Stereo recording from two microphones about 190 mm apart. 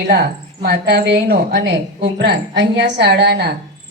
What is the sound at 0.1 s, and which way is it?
Speech, 60° right (ahead or behind).